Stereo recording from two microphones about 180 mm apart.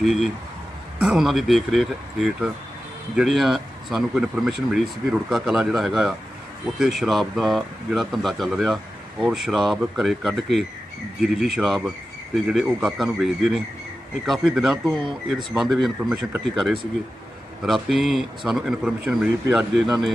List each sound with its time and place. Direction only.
0.0 s speech: centre (ahead or behind)
14.8 s speech: 25° right (ahead or behind)
15.3 s speech: centre (ahead or behind)
17.7 s speech: centre (ahead or behind)